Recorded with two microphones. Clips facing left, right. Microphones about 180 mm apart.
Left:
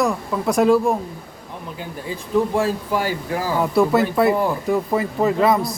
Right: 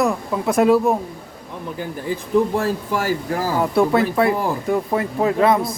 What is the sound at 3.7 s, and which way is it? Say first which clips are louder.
Speech: left 1 dB; centre (ahead or behind).